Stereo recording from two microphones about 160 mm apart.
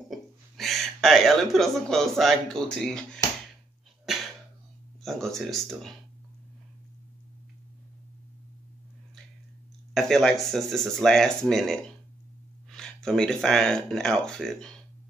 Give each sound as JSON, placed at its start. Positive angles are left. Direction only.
{"t": 0.1, "sound": "speech", "side_deg": 0}
{"t": 4.0, "sound": "a sound", "side_deg": 0}
{"t": 5.0, "sound": "speech", "side_deg": 0}
{"t": 9.9, "sound": "speech", "side_deg": 0}